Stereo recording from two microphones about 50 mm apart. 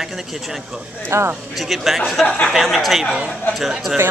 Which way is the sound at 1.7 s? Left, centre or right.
Centre.